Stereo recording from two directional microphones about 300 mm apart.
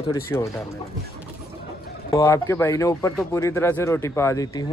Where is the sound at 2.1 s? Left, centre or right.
Centre.